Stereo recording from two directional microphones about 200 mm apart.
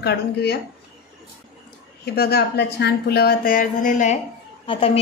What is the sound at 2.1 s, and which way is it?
Speech, 55° left (ahead or behind).